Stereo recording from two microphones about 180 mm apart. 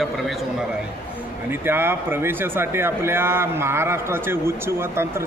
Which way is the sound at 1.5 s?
10° right (ahead or behind).